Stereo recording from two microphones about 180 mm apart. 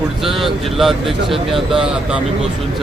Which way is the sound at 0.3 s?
Centre (ahead or behind).